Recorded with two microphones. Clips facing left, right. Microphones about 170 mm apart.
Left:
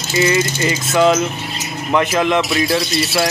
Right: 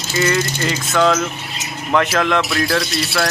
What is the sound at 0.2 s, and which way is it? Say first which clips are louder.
Speech: left 2 dB; 10° left (ahead or behind).